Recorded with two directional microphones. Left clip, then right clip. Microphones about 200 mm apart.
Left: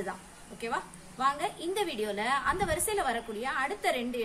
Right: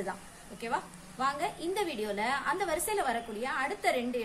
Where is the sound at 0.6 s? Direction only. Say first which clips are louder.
Even; 10° left (ahead or behind).